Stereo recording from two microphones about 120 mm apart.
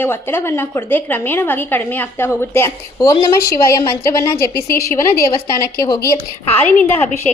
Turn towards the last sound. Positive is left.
turn(degrees=15)  # may be behind; listen again after turning